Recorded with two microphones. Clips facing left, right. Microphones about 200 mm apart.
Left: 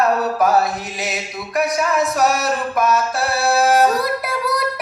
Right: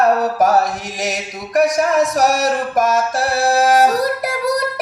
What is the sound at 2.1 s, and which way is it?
Music, 40° right (ahead or behind).